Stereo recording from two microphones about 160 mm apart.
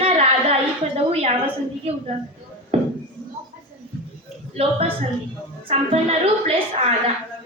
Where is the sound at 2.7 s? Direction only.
40° right (ahead or behind).